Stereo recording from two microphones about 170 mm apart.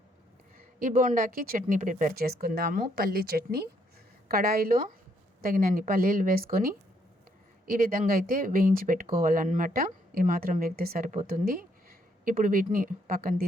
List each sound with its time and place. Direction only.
0.8 s speech: 55° right (ahead or behind)
11.3 s a sound: 60° right (ahead or behind)
12.7 s speech: 55° right (ahead or behind)